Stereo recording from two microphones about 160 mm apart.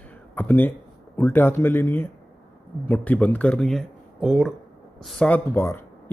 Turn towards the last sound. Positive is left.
turn(degrees=15)  # may be behind; listen again after turning